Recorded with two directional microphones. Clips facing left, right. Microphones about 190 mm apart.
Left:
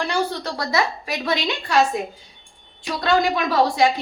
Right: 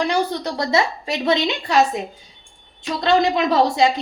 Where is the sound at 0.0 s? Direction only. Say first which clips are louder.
Right 3 dB; 20° right (ahead or behind).